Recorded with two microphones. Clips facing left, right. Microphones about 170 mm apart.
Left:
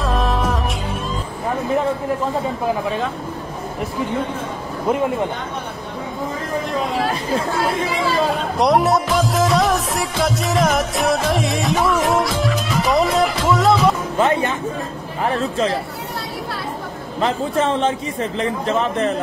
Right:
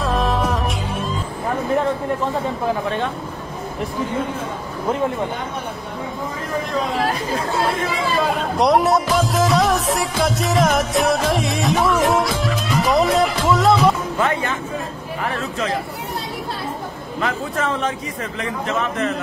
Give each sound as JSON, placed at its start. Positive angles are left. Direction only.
{"t": 0.0, "sound": "music", "side_deg": 0}
{"t": 8.5, "sound": "music", "side_deg": 0}
{"t": 14.1, "sound": "speech", "side_deg": 20}
{"t": 15.2, "sound": "speech", "side_deg": 30}
{"t": 17.2, "sound": "speech", "side_deg": 30}